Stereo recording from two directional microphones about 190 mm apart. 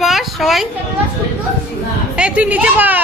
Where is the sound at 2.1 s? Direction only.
5° right (ahead or behind).